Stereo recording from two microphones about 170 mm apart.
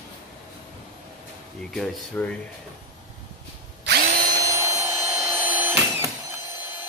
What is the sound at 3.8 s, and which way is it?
Drill, 65° right (ahead or behind).